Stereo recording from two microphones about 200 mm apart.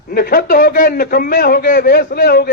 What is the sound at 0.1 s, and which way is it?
A man's voice, 50° left (ahead or behind).